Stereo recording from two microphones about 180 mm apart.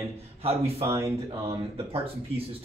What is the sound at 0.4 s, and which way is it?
Speech, 35° right (ahead or behind).